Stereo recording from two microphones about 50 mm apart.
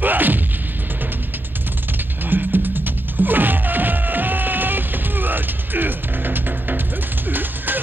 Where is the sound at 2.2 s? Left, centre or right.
Right.